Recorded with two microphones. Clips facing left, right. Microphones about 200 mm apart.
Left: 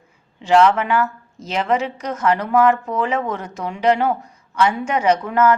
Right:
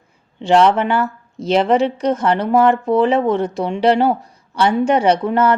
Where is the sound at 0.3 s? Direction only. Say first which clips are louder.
Right 2 dB; 30° right (ahead or behind).